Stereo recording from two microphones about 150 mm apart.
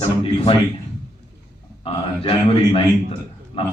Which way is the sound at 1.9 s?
40° left (ahead or behind).